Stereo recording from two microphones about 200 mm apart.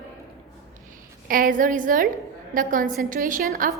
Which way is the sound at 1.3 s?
45° right (ahead or behind).